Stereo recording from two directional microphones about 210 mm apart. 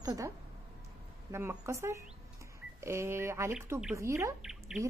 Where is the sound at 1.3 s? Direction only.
10° right (ahead or behind).